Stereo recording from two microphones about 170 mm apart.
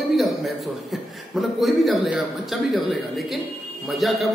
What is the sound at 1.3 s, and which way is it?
A man's voice, centre (ahead or behind).